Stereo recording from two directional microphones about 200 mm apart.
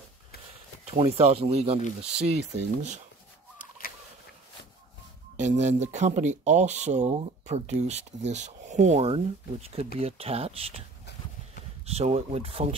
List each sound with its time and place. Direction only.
0.9 s speech: 30° right (ahead or behind)
5.4 s speech: 35° right (ahead or behind)
11.8 s speech: 30° right (ahead or behind)